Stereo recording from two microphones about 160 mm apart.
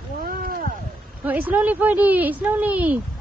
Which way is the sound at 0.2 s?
65° right (ahead or behind).